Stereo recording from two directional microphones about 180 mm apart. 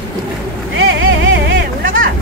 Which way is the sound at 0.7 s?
90° right.